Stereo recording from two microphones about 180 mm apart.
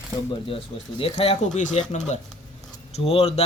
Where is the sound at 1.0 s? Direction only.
35° left (ahead or behind).